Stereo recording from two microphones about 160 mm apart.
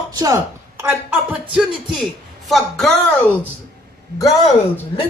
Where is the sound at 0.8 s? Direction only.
10° right (ahead or behind).